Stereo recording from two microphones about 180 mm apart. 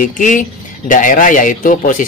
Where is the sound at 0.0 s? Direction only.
45° left (ahead or behind).